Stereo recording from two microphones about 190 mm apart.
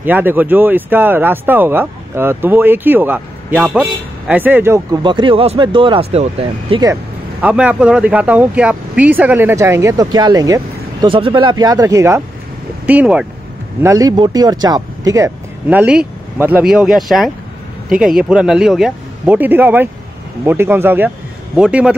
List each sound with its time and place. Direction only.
0.0 s speech: 10° right (ahead or behind)
5.0 s speech: 25° right (ahead or behind)
7.4 s speech: 5° right (ahead or behind)
13.8 s speech: 20° right (ahead or behind)